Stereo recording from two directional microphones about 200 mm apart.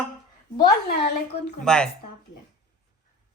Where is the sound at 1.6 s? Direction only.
5° left (ahead or behind).